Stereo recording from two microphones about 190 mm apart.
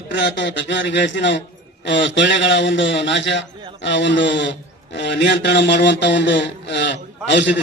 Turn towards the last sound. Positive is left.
turn(degrees=65)  # may be behind; listen again after turning